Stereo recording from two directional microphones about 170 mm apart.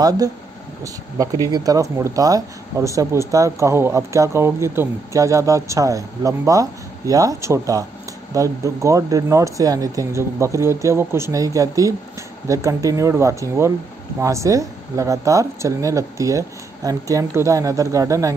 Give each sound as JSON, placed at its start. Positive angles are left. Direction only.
{"t": 0.8, "sound": "speech", "side_deg": -20}